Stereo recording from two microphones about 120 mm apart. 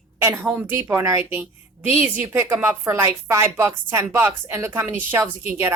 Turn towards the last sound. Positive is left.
turn(degrees=-20)  # may be behind; listen again after turning